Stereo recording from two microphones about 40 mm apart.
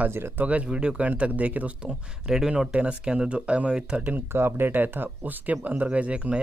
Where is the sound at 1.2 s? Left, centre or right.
Right.